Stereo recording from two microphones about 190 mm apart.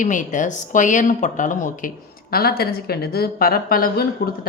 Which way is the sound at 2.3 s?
55° left (ahead or behind).